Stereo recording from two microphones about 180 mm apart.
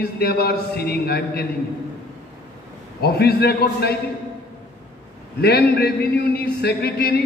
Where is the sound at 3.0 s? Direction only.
60° left (ahead or behind).